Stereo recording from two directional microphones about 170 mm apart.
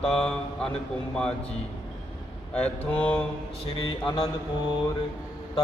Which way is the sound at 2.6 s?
5° left (ahead or behind).